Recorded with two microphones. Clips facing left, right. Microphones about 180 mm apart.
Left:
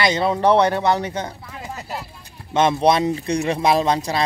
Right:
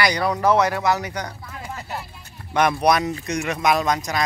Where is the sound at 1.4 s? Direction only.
10° left (ahead or behind).